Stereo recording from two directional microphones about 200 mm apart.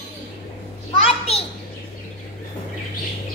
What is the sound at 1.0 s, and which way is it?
Children playing, 30° left (ahead or behind).